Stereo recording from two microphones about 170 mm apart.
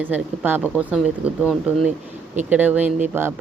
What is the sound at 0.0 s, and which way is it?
Speech, 10° right (ahead or behind).